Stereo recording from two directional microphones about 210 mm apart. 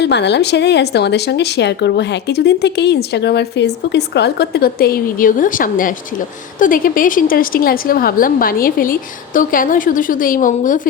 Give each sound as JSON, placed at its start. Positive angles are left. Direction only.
{"t": 0.0, "sound": "a woman's voice", "side_deg": 55}